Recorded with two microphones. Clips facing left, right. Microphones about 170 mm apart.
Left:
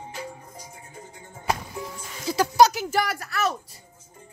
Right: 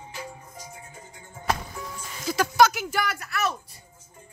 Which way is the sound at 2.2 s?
35° left (ahead or behind).